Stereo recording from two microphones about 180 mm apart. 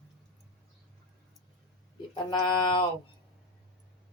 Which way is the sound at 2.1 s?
25° left (ahead or behind).